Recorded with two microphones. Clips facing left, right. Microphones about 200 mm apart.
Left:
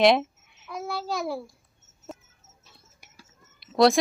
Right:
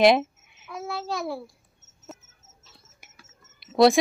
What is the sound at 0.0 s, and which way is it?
Babbling, centre (ahead or behind).